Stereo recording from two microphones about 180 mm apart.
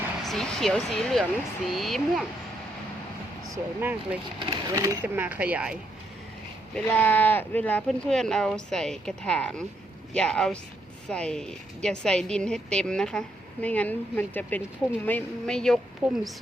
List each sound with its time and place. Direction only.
0.3 s a woman's voice: centre (ahead or behind)
3.5 s speech: 10° right (ahead or behind)
4.4 s speech: 20° right (ahead or behind); by 5.7 s 5° right (ahead or behind)
6.7 s a woman's voice: 10° left (ahead or behind)